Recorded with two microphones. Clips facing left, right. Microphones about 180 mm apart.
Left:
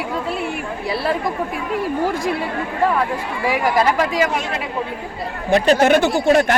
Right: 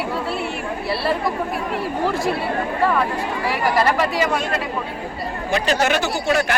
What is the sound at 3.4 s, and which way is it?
Speech, 15° left (ahead or behind).